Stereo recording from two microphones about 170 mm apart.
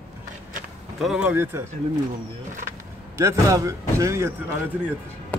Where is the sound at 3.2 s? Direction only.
15° right (ahead or behind).